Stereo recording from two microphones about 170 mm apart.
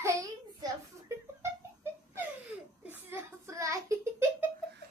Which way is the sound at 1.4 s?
15° right (ahead or behind).